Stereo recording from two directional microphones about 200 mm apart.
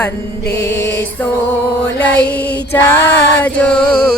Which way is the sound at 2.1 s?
10° left (ahead or behind).